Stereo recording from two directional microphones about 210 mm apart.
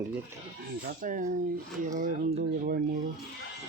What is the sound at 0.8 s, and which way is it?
A man's voice, 40° right (ahead or behind).